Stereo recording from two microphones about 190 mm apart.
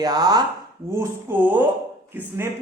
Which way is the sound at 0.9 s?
10° right (ahead or behind).